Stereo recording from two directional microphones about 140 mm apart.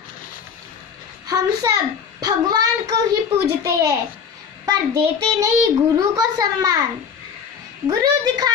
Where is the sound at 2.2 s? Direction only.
25° right (ahead or behind).